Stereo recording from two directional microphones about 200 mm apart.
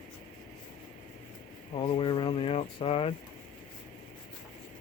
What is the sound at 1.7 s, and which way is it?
Speech, 25° left (ahead or behind).